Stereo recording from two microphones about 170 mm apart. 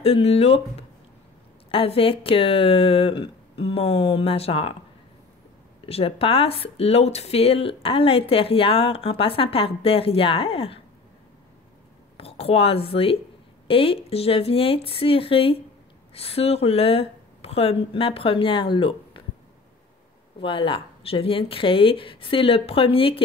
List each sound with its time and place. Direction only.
0.0 s speech: 35° left (ahead or behind)
5.9 s speech: 35° left (ahead or behind)
12.2 s speech: 35° left (ahead or behind)
20.3 s speech: 30° left (ahead or behind)